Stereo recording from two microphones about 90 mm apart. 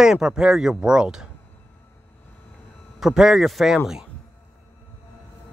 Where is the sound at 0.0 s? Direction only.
5° right (ahead or behind).